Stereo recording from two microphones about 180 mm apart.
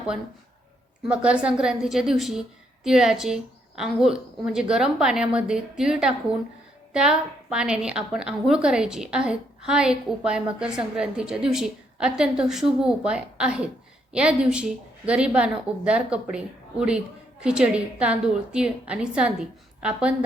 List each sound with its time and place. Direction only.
1.0 s a woman's voice: 5° right (ahead or behind)